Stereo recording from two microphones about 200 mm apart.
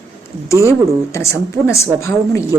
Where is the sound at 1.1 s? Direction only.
15° left (ahead or behind).